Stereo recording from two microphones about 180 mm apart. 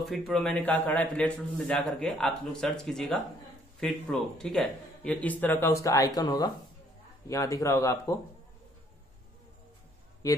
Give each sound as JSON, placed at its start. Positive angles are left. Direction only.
{"t": 0.0, "sound": "a man's voice", "side_deg": 0}